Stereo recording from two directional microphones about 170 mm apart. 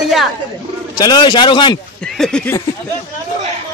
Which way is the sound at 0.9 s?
25° left (ahead or behind).